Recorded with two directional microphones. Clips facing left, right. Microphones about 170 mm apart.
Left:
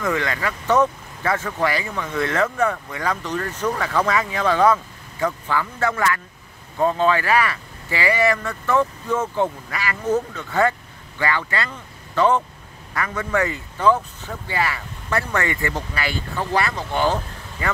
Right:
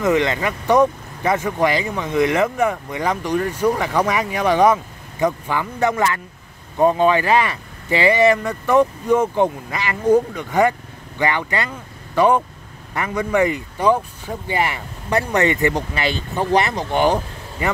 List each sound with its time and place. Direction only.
0.0 s speech: 20° right (ahead or behind)